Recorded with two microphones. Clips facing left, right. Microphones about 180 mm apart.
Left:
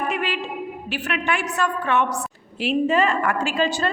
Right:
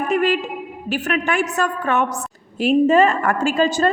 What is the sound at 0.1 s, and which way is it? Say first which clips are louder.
A woman's voice: right 7 dB; 45° right (ahead or behind).